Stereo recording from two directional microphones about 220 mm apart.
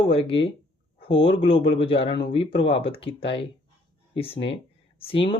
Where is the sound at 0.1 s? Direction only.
25° left (ahead or behind).